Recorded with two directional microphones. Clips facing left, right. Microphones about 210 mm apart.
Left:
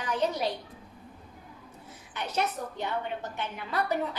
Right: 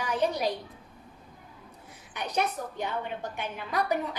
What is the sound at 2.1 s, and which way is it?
A woman's voice, 15° right (ahead or behind).